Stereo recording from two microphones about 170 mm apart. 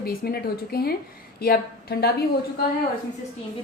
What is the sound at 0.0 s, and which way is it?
Speech, 65° left (ahead or behind).